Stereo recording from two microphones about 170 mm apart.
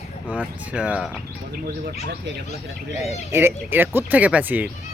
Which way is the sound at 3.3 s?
15° right (ahead or behind).